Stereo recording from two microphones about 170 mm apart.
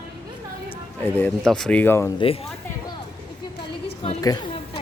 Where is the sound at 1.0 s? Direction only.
10° left (ahead or behind).